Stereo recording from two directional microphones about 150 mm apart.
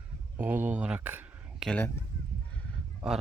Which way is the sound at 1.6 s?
5° left (ahead or behind).